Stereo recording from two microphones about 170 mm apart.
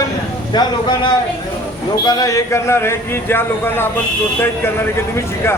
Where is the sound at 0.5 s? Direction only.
25° left (ahead or behind).